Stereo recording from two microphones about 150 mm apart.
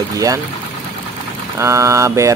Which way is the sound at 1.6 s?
20° right (ahead or behind).